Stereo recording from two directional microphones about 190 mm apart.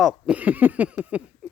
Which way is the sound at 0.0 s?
5° right (ahead or behind).